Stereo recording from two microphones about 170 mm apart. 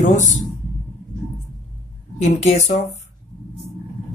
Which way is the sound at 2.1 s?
40° left (ahead or behind).